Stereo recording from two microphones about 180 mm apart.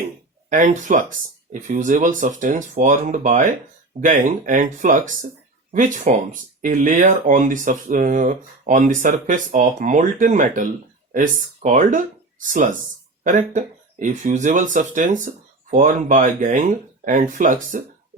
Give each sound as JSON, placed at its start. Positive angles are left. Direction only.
{"t": 0.5, "sound": "speech", "side_deg": -45}